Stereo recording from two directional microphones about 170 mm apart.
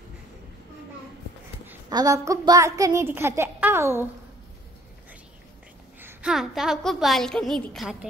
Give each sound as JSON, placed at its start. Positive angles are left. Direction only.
{"t": 1.9, "sound": "a woman's voice", "side_deg": -20}
{"t": 5.9, "sound": "a woman's voice", "side_deg": -10}